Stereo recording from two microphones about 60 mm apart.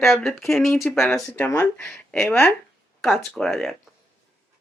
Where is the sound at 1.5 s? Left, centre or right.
Left.